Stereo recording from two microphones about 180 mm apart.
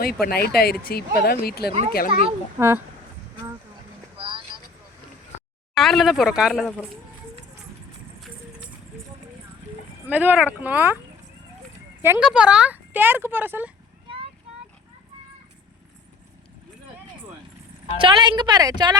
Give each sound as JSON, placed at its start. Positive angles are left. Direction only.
{"t": 0.0, "sound": "speech", "side_deg": 55}
{"t": 2.6, "sound": "speech", "side_deg": -15}
{"t": 4.2, "sound": "vehicle", "side_deg": -30}
{"t": 5.7, "sound": "speech", "side_deg": 0}
{"t": 10.1, "sound": "speech", "side_deg": -10}
{"t": 12.0, "sound": "speech", "side_deg": -10}
{"t": 17.9, "sound": "a woman's voice", "side_deg": -25}